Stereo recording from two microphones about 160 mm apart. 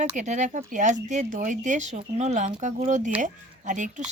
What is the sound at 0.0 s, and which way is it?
Speech, 50° right (ahead or behind).